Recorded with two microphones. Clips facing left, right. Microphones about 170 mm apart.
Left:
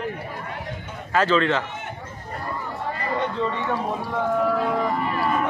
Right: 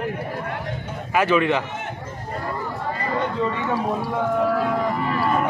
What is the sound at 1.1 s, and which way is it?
Speech, 15° right (ahead or behind).